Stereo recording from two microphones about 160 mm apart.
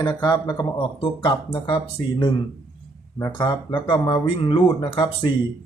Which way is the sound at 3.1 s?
20° left (ahead or behind).